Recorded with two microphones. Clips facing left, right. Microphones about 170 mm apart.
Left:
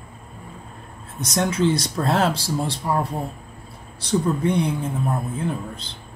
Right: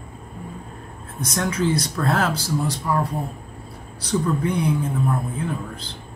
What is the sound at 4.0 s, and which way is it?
Speech, 25° left (ahead or behind).